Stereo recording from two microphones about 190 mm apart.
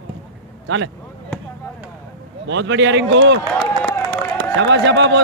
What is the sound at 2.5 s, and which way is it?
Speech, 75° right (ahead or behind).